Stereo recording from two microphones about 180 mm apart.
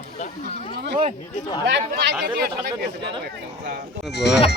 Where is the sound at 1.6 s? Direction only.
70° right (ahead or behind).